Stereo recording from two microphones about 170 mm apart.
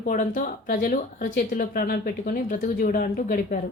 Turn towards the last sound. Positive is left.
turn(degrees=55)  # may be behind; listen again after turning